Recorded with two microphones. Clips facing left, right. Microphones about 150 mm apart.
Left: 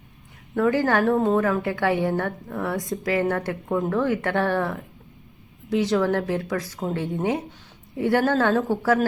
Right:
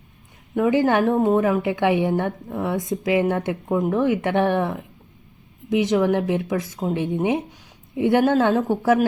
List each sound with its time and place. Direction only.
0.5 s a woman's voice: 15° right (ahead or behind)